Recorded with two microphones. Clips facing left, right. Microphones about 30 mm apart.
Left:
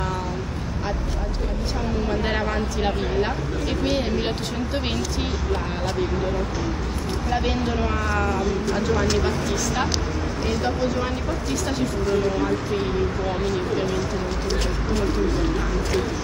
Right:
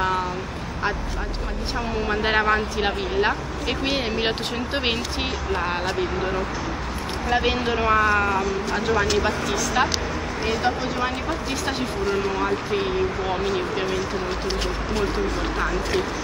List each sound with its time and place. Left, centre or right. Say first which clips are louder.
2.0 s speech: right 7 dB; right
5.5 s speech: right 2 dB; right
12.1 s speech: left 1 dB; centre